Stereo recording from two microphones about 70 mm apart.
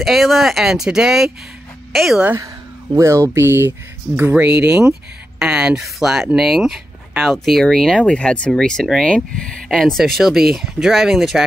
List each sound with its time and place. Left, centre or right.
0.0 s a woman's voice: centre
3.0 s speech: right; by 7.6 s centre
7.6 s speech: centre